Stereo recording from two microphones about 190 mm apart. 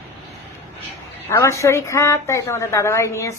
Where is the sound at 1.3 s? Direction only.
15° left (ahead or behind).